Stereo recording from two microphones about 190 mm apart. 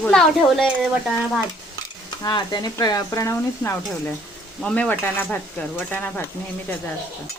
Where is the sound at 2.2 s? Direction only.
20° left (ahead or behind).